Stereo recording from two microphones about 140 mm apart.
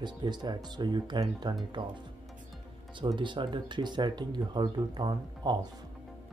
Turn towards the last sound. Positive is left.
turn(degrees=-30)  # may be behind; listen again after turning